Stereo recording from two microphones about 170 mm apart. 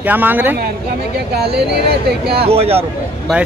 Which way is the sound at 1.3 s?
70° right (ahead or behind).